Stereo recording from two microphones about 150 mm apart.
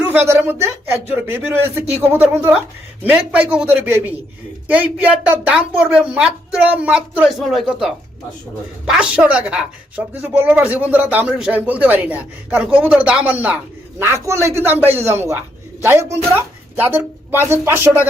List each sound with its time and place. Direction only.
0.0 s a woman's voice: 15° right (ahead or behind)